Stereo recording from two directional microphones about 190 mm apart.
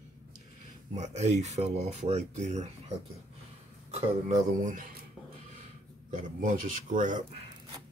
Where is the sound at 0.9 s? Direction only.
35° right (ahead or behind).